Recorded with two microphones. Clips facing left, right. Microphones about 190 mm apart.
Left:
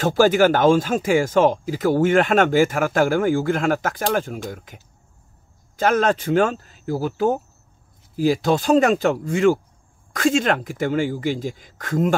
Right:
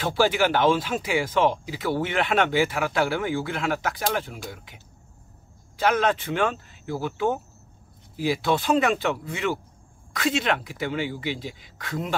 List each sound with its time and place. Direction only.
0.0 s speech: 45° left (ahead or behind)